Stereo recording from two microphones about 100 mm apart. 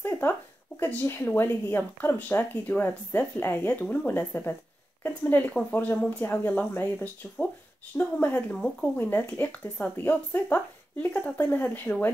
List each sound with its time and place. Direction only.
0.0 s a sound: 20° left (ahead or behind)
0.7 s speech: 20° left (ahead or behind)
8.5 s speech: 10° left (ahead or behind)
8.9 s speech: 20° left (ahead or behind)